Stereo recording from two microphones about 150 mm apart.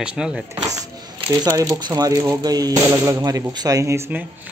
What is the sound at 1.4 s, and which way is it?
Speech, 25° right (ahead or behind).